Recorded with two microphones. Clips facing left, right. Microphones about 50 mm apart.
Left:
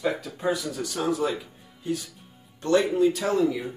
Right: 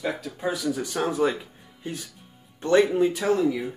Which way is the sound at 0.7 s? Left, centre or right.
Right.